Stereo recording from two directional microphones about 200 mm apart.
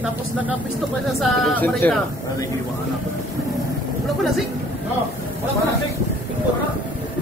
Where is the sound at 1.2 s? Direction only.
10° left (ahead or behind).